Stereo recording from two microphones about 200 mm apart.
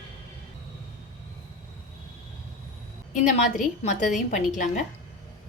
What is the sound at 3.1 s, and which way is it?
A woman's voice, 35° left (ahead or behind).